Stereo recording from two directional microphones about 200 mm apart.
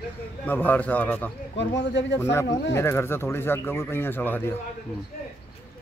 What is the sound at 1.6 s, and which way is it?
Speech, 60° left (ahead or behind).